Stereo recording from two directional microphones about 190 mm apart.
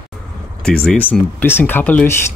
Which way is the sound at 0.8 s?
5° left (ahead or behind).